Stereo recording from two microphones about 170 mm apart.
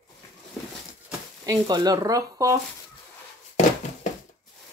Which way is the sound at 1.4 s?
25° right (ahead or behind).